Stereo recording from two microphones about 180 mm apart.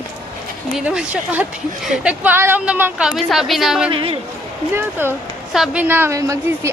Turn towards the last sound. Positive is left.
turn(degrees=-15)  # may be behind; listen again after turning